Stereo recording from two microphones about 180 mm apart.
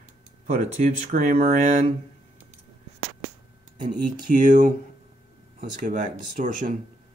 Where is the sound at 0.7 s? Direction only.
45° right (ahead or behind).